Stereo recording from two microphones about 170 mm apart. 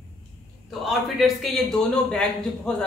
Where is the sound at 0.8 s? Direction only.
Centre (ahead or behind).